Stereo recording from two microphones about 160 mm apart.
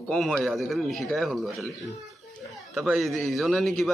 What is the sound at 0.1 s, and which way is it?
A man's voice, centre (ahead or behind).